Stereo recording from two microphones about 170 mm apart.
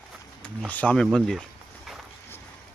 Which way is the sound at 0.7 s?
10° left (ahead or behind).